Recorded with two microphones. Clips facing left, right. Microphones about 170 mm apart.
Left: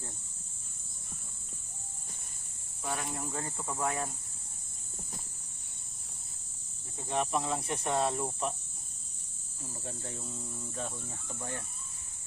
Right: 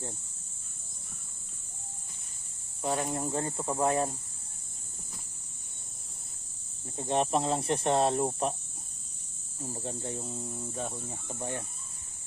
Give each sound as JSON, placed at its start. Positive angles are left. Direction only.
{"t": 2.8, "sound": "speech", "side_deg": -30}
{"t": 7.1, "sound": "speech", "side_deg": -30}
{"t": 9.8, "sound": "speech", "side_deg": -25}